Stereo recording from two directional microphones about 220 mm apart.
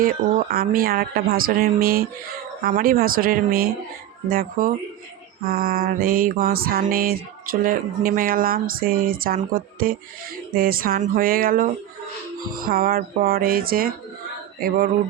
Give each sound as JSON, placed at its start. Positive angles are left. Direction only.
{"t": 0.0, "sound": "speech", "side_deg": -40}
{"t": 2.6, "sound": "mantra", "side_deg": -40}